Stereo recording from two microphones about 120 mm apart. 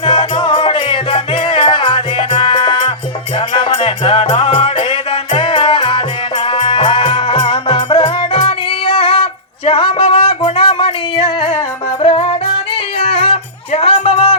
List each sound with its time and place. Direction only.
0.0 s music: 40° left (ahead or behind)